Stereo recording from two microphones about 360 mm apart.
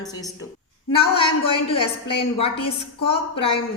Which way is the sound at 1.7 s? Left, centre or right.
Centre.